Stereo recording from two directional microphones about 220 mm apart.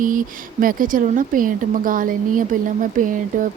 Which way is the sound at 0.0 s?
35° right (ahead or behind).